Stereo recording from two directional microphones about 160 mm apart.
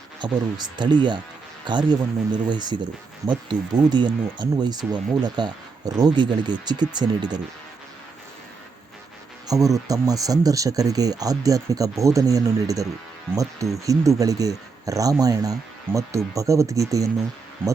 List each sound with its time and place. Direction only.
0.2 s speech: 25° right (ahead or behind)
9.5 s speech: 20° right (ahead or behind)